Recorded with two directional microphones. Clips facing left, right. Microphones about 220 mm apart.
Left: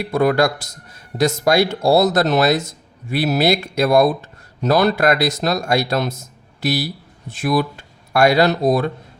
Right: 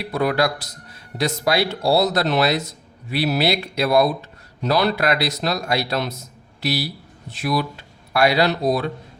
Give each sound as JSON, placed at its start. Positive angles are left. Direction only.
{"t": 0.0, "sound": "speech", "side_deg": 50}